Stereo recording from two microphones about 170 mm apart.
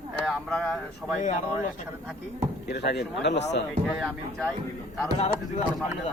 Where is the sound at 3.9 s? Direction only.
Centre (ahead or behind).